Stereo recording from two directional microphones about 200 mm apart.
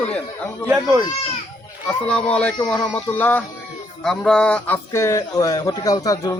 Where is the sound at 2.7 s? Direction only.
10° left (ahead or behind).